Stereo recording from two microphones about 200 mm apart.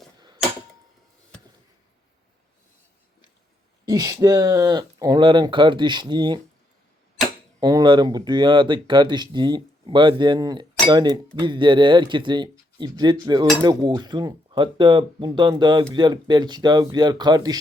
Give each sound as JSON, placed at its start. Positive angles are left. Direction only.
{"t": 3.8, "sound": "speech", "side_deg": -20}
{"t": 7.6, "sound": "speech", "side_deg": -20}